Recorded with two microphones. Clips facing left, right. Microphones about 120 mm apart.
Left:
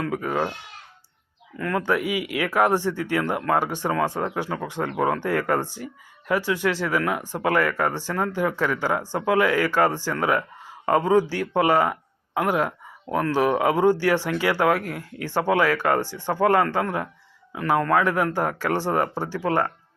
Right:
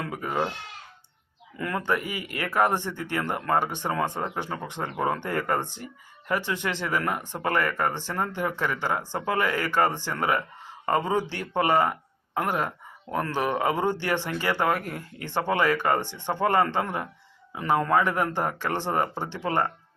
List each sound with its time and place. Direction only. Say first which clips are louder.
0.0 s speech: left 3 dB; centre (ahead or behind)
1.5 s speech: left 4 dB; 5° right (ahead or behind)
1.8 s speech: left 6 dB; 5° left (ahead or behind)
16.0 s speech: left 4 dB; 20° right (ahead or behind)
16.3 s speech: left 3 dB; 5° left (ahead or behind)